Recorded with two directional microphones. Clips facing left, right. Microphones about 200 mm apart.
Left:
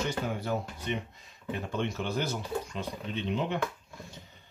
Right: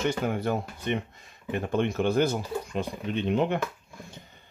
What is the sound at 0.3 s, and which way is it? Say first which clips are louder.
Speech: right 4 dB; 55° right (ahead or behind).